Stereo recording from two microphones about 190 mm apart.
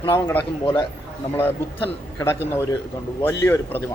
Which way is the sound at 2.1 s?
15° left (ahead or behind).